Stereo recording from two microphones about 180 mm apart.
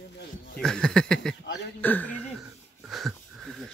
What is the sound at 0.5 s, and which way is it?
Speech, 5° left (ahead or behind).